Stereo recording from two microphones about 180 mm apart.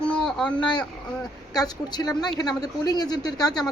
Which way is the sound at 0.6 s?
25° left (ahead or behind).